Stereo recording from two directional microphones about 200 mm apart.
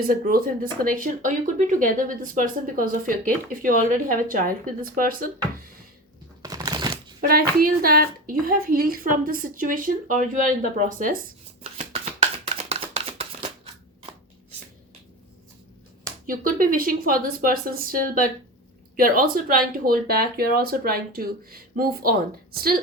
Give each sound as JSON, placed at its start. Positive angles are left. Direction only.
{"t": 0.1, "sound": "speech", "side_deg": -45}
{"t": 6.4, "sound": "a sound", "side_deg": -20}
{"t": 7.2, "sound": "speech", "side_deg": -45}
{"t": 12.6, "sound": "shuffling cards", "side_deg": -30}
{"t": 16.2, "sound": "speech", "side_deg": -45}